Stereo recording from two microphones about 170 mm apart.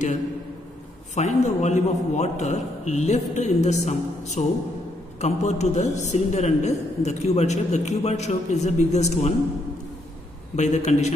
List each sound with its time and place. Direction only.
1.1 s a man's voice: 45° left (ahead or behind)
10.5 s a man's voice: 40° left (ahead or behind)